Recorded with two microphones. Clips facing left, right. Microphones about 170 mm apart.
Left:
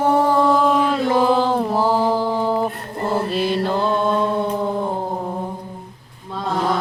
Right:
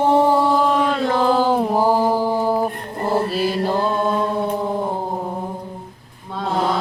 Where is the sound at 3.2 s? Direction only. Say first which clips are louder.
Even; 5° right (ahead or behind).